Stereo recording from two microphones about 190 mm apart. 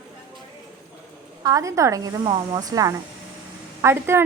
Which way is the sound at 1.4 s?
15° right (ahead or behind).